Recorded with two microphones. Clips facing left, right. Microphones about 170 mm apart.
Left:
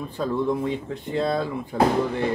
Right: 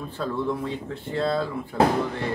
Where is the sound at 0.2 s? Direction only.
15° left (ahead or behind).